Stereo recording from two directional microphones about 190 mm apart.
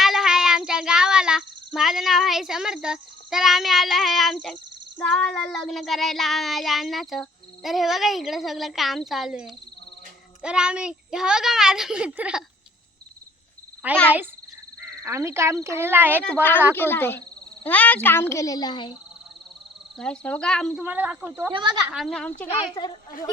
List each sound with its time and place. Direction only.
0.0 s speech: centre (ahead or behind)
4.9 s child singing: 5° left (ahead or behind)
13.8 s speech: 10° right (ahead or behind)
15.0 s speech: 15° right (ahead or behind)
16.2 s a child's voice: 10° left (ahead or behind)
20.0 s child singing: 5° left (ahead or behind)
20.8 s speech: 10° right (ahead or behind)
21.5 s speech: 25° right (ahead or behind)
21.8 s child singing: centre (ahead or behind)
22.4 s speech: 25° left (ahead or behind)
23.1 s speech: 45° left (ahead or behind)